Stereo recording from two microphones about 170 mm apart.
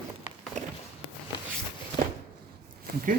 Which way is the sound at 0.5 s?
45° right (ahead or behind).